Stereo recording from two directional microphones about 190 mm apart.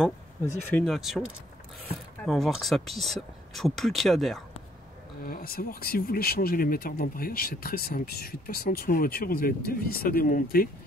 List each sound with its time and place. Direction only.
0.7 s speech: 5° left (ahead or behind)
5.2 s speech: 50° left (ahead or behind)